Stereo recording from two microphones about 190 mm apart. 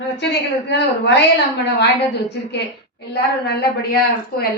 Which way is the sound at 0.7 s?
60° left (ahead or behind).